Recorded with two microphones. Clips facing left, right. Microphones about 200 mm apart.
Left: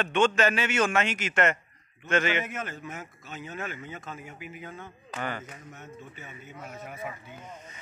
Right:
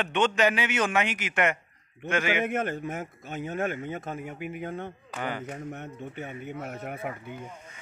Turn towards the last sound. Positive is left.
turn(degrees=-60)  # may be behind; listen again after turning